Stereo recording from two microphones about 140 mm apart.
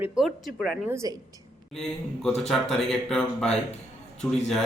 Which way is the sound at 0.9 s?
20° right (ahead or behind).